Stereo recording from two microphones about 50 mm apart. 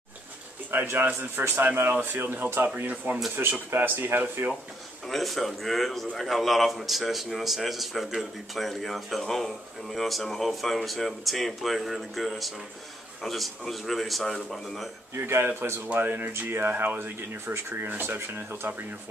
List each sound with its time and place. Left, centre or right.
0.7 s speech: right
2.4 s speech: right
5.0 s speech: centre
15.1 s speech: right
15.9 s speech: right